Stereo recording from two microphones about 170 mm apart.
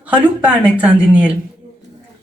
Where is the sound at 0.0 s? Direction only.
10° right (ahead or behind).